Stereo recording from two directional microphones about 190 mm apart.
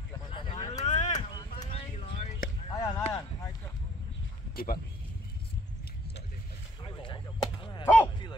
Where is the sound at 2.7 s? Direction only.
20° left (ahead or behind).